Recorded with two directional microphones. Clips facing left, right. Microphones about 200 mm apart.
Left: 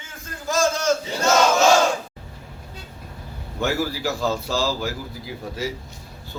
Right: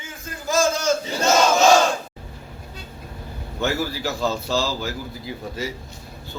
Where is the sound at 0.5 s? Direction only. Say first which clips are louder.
Even; centre (ahead or behind).